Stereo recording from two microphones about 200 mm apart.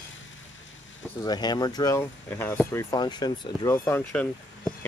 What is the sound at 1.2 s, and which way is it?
Speech, 20° left (ahead or behind).